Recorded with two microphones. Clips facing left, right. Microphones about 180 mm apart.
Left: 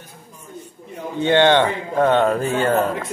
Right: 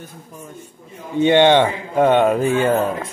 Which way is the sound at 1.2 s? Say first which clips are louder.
Right 2 dB; 15° right (ahead or behind).